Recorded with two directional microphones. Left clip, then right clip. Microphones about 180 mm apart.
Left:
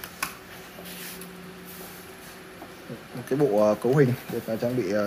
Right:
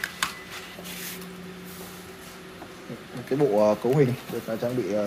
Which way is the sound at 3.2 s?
10° left (ahead or behind).